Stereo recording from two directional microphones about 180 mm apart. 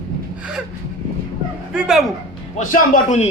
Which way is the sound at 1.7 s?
5° right (ahead or behind).